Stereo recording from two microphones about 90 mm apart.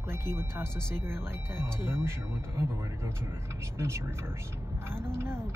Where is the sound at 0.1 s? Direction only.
25° right (ahead or behind).